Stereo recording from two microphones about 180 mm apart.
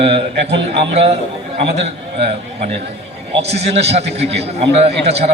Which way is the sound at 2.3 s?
35° right (ahead or behind).